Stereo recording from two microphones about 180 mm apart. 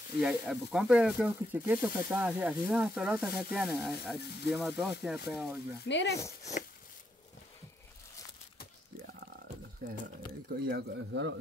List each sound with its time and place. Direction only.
0.2 s speech: centre (ahead or behind)
5.9 s speech: 80° left
9.8 s a man's voice: 55° right (ahead or behind); by 11.3 s 75° right (ahead or behind)